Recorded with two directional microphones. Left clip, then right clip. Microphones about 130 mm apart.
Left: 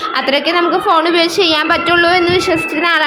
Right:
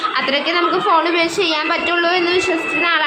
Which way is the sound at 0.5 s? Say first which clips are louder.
Left 2 dB; 35° left (ahead or behind).